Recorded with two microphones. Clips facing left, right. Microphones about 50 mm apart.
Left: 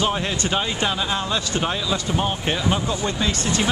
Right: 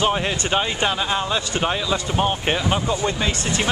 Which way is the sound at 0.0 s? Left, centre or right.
Centre.